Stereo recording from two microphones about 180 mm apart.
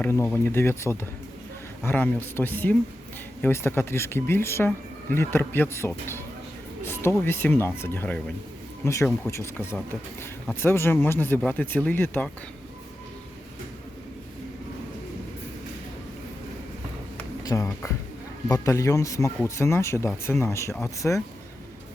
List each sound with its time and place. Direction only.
0.0 s speech: 10° left (ahead or behind)
17.4 s speech: 20° left (ahead or behind)